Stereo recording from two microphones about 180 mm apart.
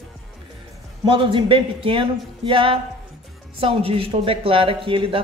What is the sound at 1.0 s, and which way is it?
Speech, 30° right (ahead or behind).